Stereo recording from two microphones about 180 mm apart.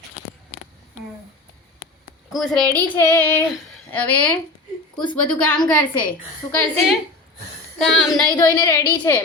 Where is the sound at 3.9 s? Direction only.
10° left (ahead or behind).